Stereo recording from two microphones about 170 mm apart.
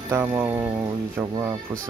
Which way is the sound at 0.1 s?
10° right (ahead or behind).